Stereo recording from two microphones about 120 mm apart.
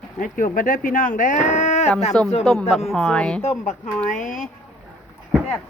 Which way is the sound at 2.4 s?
5° left (ahead or behind).